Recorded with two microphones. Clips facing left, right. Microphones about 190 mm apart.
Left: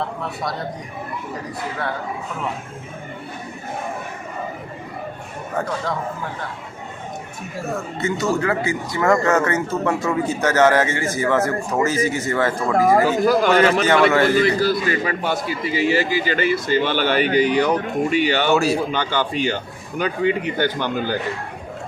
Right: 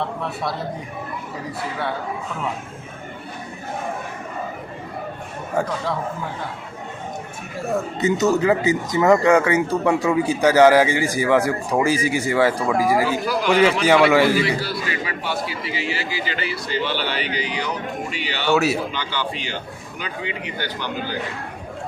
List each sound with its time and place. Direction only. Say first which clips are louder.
7.9 s speech: right 3 dB; 20° right (ahead or behind)
12.7 s a man's voice: left 3 dB; 50° left (ahead or behind)
13.8 s speech: right 1 dB; 10° right (ahead or behind)
14.4 s a man's voice: left 6 dB; 45° left (ahead or behind)
18.5 s a man's voice: right 2 dB; 5° right (ahead or behind)
18.9 s a man's voice: left 5 dB; 50° left (ahead or behind)